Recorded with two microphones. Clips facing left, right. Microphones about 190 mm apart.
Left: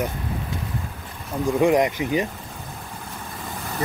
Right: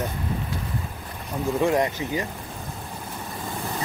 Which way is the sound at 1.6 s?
15° left (ahead or behind).